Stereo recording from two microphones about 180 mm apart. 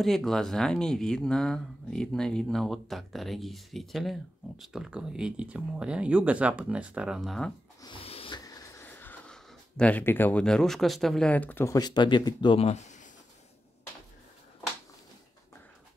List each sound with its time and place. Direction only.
0.0 s speech: centre (ahead or behind)
7.8 s snort: 30° left (ahead or behind)
8.4 s speech: 20° left (ahead or behind); by 13.1 s 40° left (ahead or behind)